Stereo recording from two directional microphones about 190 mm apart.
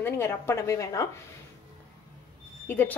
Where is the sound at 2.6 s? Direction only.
10° left (ahead or behind).